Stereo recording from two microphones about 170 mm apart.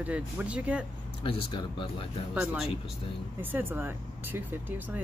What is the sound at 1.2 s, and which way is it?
Speech, 30° left (ahead or behind).